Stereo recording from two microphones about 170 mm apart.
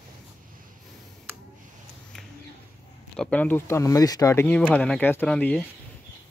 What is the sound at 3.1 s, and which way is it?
Speech, 5° left (ahead or behind).